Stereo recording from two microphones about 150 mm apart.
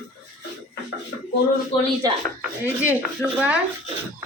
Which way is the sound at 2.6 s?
15° right (ahead or behind).